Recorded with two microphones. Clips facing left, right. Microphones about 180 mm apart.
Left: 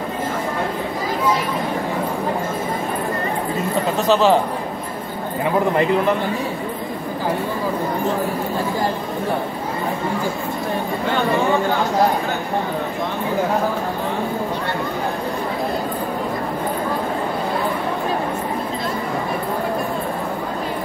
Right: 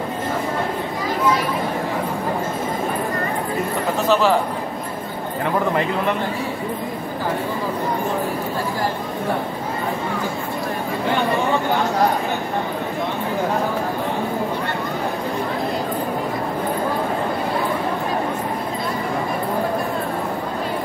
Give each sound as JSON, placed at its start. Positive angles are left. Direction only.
{"t": 4.1, "sound": "a man's voice", "side_deg": 20}